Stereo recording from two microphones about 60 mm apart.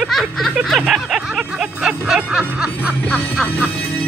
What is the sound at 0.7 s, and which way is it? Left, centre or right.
Music, centre.